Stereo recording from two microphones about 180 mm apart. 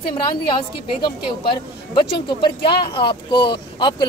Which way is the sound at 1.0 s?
25° left (ahead or behind).